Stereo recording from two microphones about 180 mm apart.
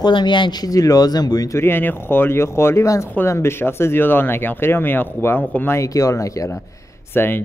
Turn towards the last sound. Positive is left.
turn(degrees=10)  # may be behind; listen again after turning